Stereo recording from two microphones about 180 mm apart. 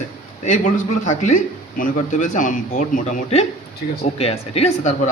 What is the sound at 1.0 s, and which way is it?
A man's voice, 40° left (ahead or behind).